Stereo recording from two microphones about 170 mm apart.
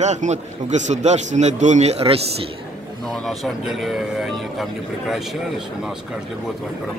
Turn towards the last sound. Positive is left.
turn(degrees=0)  # may be behind; listen again after turning